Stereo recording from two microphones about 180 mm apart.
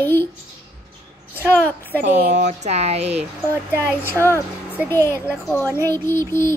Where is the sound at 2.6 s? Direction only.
35° right (ahead or behind).